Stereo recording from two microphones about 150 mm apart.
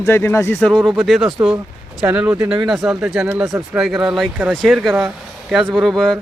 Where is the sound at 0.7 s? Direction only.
Centre (ahead or behind).